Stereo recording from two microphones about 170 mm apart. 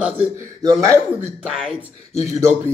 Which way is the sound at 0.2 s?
20° right (ahead or behind).